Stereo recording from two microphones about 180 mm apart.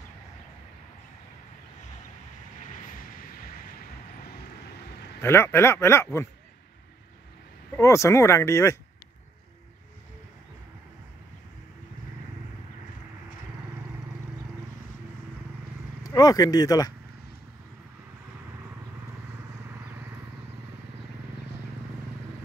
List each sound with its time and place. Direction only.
5.2 s speech: 15° left (ahead or behind)
7.7 s speech: 15° left (ahead or behind)
16.0 s speech: 20° left (ahead or behind)